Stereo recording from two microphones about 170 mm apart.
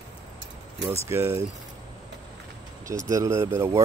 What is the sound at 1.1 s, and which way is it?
Speech, 15° right (ahead or behind).